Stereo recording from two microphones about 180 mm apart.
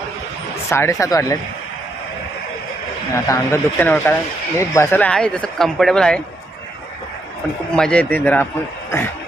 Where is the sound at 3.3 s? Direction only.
10° left (ahead or behind).